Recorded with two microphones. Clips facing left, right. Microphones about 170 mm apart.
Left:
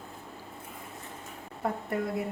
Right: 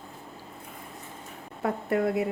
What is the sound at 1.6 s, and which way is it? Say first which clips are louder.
Speech: right 5 dB; 80° right.